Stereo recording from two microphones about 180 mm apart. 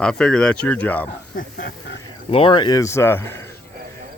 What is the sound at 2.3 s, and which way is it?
Speech, 30° left (ahead or behind).